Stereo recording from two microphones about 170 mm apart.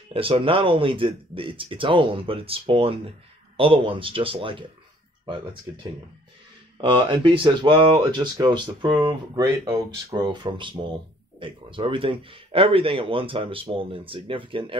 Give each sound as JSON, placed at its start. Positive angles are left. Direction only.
{"t": 0.1, "sound": "speech", "side_deg": -30}
{"t": 5.7, "sound": "speech", "side_deg": -25}